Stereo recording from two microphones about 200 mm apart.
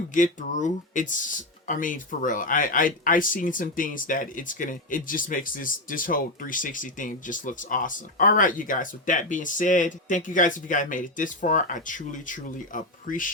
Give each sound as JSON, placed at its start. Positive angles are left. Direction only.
{"t": 0.1, "sound": "speech", "side_deg": 40}